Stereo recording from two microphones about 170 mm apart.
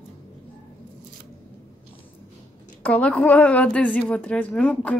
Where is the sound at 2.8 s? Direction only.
10° left (ahead or behind).